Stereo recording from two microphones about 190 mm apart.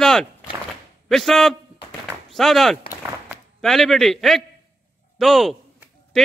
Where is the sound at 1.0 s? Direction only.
Centre (ahead or behind).